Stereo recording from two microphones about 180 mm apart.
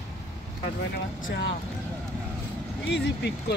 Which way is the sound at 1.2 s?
90° left.